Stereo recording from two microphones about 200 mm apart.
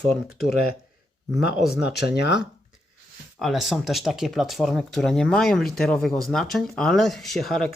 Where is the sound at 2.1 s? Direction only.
60° left (ahead or behind).